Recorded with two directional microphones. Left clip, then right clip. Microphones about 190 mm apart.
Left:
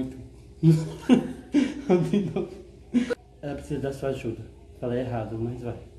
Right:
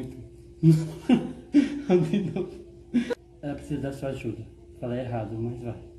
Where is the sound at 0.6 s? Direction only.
5° right (ahead or behind).